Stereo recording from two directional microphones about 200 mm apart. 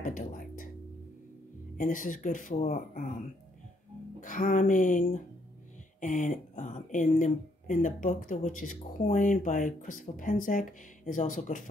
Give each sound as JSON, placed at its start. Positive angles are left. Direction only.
{"t": 0.0, "sound": "music", "side_deg": 40}
{"t": 1.8, "sound": "speech", "side_deg": 40}
{"t": 4.2, "sound": "speech", "side_deg": 40}